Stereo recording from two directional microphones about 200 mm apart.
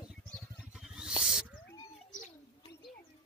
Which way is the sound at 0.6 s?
5° right (ahead or behind).